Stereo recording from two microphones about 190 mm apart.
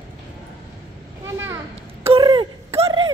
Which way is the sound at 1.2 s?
15° right (ahead or behind).